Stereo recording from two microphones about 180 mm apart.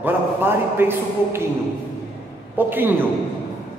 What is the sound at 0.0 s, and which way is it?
A man's voice, 10° right (ahead or behind).